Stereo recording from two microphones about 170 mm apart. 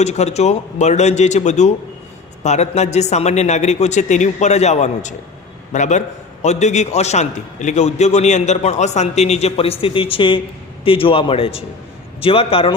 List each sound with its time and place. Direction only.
0.0 s a man's voice: 40° left (ahead or behind)